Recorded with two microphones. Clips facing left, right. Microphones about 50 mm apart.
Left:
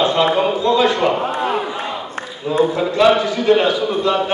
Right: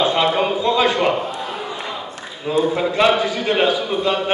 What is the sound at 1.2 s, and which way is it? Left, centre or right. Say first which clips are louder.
Crowd: left 7 dB; left.